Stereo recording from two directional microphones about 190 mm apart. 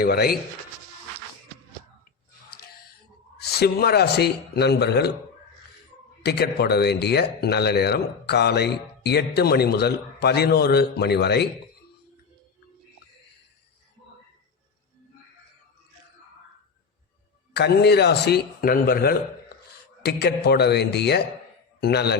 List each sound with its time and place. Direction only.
0.0 s speech: 55° left (ahead or behind)
3.6 s speech: 55° left (ahead or behind)
6.2 s speech: 60° left (ahead or behind)
17.5 s a man's voice: 60° left (ahead or behind)